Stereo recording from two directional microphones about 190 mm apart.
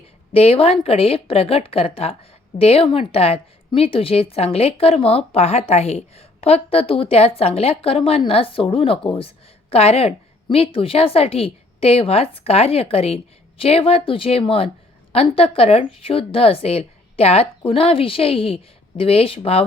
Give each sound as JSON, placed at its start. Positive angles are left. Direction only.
{"t": 0.3, "sound": "a woman's voice", "side_deg": 30}